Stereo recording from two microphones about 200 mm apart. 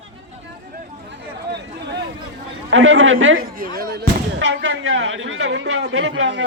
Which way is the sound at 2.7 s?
75° right (ahead or behind).